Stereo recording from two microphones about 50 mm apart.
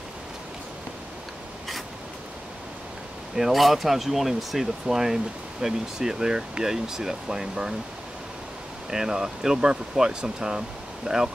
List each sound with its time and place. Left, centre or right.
3.3 s speech: centre
8.9 s speech: centre